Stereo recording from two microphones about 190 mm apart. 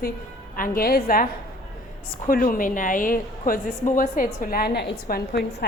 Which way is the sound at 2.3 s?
45° left (ahead or behind).